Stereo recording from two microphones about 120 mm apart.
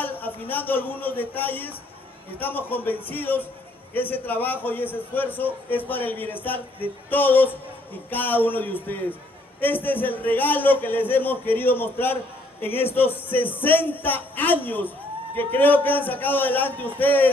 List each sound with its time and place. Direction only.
0.0 s a man's voice: 15° left (ahead or behind)